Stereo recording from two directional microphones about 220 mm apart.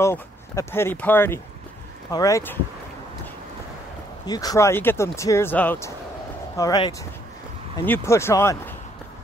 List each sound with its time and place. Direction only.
0.0 s speech: 10° left (ahead or behind)
4.3 s speech: 15° left (ahead or behind)